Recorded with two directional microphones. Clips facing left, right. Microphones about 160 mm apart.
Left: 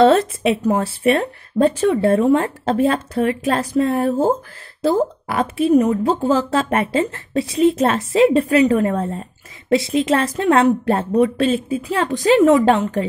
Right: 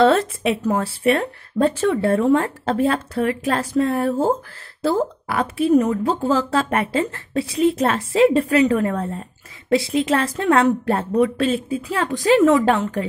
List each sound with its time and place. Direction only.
0.0 s a woman's voice: 20° left (ahead or behind)